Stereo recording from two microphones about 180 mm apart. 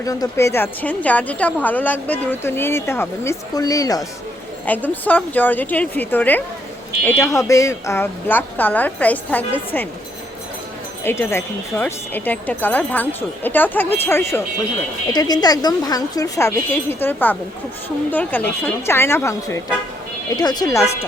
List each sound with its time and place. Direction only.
0.0 s speech: 20° left (ahead or behind)
4.6 s speech: 10° left (ahead or behind)
11.0 s speech: 15° left (ahead or behind)